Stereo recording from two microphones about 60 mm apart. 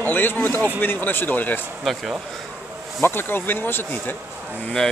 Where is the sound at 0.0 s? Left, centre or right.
Left.